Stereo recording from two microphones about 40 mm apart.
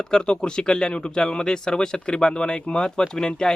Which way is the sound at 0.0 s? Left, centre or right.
Left.